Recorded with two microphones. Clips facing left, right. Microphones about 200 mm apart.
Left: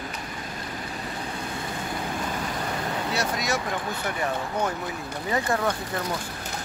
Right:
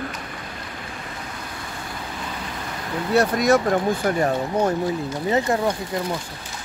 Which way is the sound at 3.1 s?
55° right (ahead or behind).